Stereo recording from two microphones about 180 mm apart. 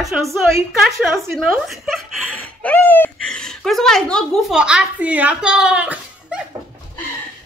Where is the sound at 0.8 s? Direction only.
Centre (ahead or behind).